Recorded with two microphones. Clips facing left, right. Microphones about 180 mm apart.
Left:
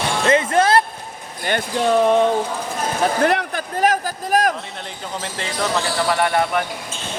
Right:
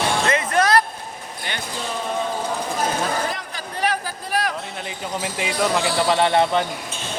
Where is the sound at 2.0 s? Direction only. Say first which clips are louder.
Left 8 dB; 70° left (ahead or behind).